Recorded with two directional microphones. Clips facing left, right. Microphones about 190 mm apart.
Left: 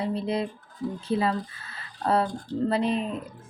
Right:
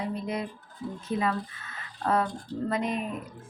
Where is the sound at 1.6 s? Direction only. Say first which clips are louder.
Left 2 dB; 30° left (ahead or behind).